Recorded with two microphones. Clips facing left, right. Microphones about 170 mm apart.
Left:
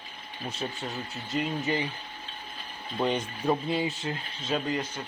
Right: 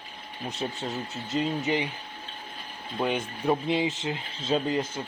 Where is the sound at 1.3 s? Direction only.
20° right (ahead or behind).